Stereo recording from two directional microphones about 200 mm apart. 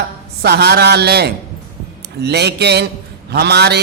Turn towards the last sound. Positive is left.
turn(degrees=-55)  # may be behind; listen again after turning